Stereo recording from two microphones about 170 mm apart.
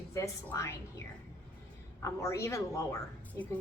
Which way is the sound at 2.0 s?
15° left (ahead or behind).